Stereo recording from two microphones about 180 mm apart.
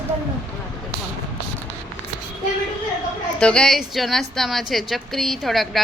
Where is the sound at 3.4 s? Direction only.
5° left (ahead or behind).